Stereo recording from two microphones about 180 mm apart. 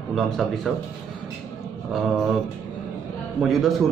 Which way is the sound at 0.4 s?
Centre (ahead or behind).